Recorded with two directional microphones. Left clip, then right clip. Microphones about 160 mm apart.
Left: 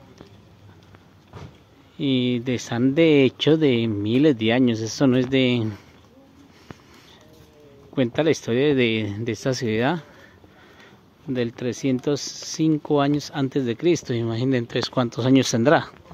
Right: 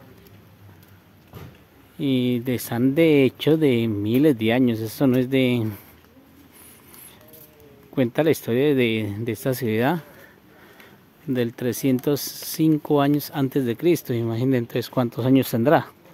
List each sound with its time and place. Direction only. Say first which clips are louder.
2.0 s speech: even; 15° right (ahead or behind)
7.9 s speech: even; 20° right (ahead or behind)
11.3 s speech: right 1 dB; 25° right (ahead or behind)